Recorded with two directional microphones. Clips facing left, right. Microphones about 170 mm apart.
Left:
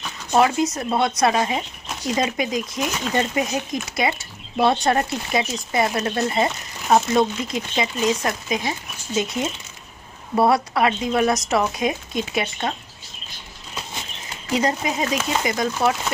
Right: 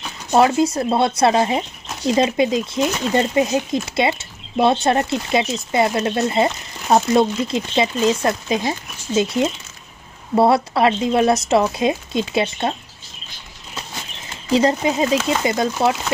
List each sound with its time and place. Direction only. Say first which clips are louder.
0.4 s speech: right 3 dB; 30° right (ahead or behind)
14.5 s speech: right 5 dB; 30° right (ahead or behind)